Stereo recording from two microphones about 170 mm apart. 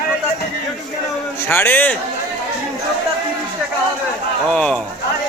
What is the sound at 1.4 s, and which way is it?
Speech, 15° left (ahead or behind).